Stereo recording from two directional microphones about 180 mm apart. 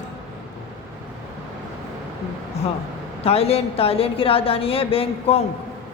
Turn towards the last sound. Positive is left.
turn(degrees=30)  # may be behind; listen again after turning